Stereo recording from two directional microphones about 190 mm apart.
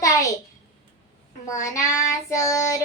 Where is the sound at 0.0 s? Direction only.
15° left (ahead or behind).